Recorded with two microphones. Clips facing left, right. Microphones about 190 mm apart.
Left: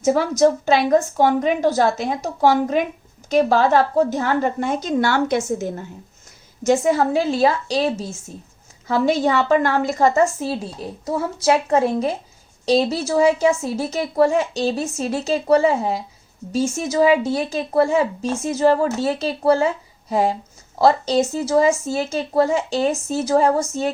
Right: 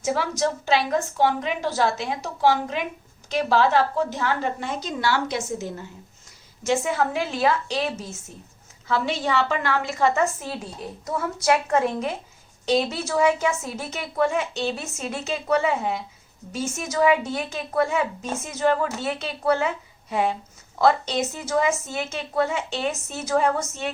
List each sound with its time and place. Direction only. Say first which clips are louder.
0.0 s a woman's voice: left 8 dB; 45° left (ahead or behind)
6.7 s a woman's voice: left 6 dB; 40° left (ahead or behind)
8.9 s a woman's voice: left 6 dB; 45° left (ahead or behind)